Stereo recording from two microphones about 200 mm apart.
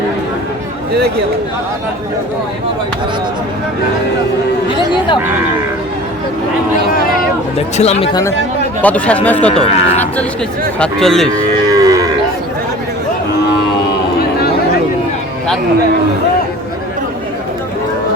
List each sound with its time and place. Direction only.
7.8 s speech: 30° left (ahead or behind)
8.8 s speech: 5° left (ahead or behind)
9.5 s speech: 30° left (ahead or behind)
10.8 s speech: centre (ahead or behind)
11.3 s livestock: 15° right (ahead or behind)